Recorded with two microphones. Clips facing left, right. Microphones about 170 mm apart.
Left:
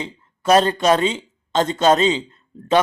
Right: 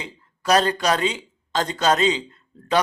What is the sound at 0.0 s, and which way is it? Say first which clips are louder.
Speech: left 5 dB; 25° left (ahead or behind).